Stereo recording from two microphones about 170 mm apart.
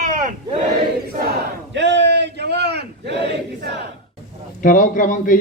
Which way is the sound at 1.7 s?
90° right.